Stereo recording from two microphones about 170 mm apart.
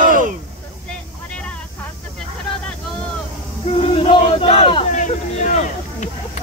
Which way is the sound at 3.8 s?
35° left (ahead or behind).